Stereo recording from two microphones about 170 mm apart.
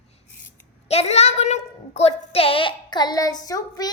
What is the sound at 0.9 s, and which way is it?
A woman's voice, 40° left (ahead or behind).